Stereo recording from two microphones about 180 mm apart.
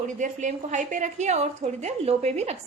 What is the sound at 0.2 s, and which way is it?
A woman's voice, 45° right (ahead or behind).